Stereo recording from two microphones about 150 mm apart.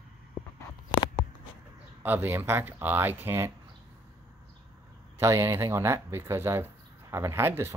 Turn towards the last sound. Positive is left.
turn(degrees=-15)  # may be behind; listen again after turning